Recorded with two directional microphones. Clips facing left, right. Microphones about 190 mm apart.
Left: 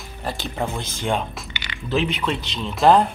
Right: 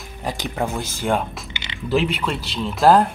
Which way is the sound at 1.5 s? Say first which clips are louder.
Right 1 dB; 25° right (ahead or behind).